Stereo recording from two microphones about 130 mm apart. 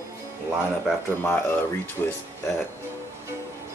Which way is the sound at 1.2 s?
15° left (ahead or behind).